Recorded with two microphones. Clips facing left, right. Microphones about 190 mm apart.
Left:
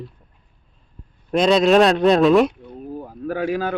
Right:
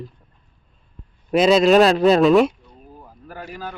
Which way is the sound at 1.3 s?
5° right (ahead or behind).